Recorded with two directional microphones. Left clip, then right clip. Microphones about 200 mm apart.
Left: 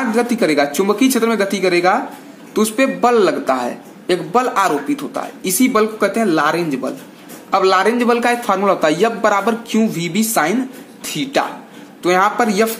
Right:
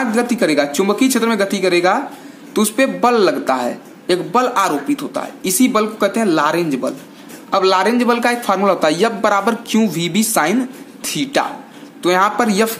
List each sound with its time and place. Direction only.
0.1 s a man's voice: centre (ahead or behind)